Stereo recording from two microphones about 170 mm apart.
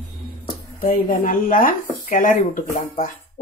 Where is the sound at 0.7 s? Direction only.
60° left (ahead or behind).